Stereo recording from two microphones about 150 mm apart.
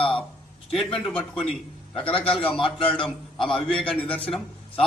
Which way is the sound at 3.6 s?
5° left (ahead or behind).